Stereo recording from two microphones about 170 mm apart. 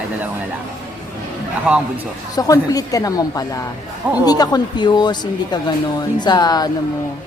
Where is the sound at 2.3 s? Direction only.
20° left (ahead or behind).